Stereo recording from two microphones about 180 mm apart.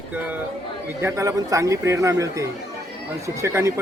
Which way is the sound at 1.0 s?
15° right (ahead or behind).